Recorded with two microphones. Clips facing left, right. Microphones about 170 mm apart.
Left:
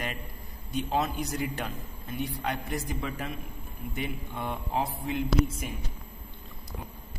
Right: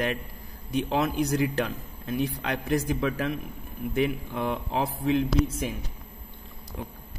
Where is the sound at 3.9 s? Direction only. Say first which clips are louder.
Right 9 dB; 90° right.